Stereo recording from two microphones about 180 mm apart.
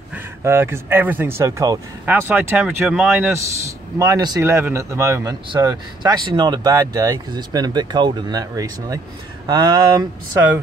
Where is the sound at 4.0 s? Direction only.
20° right (ahead or behind).